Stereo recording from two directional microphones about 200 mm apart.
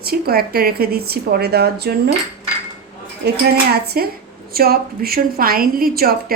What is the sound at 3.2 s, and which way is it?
A woman's voice, 55° right (ahead or behind).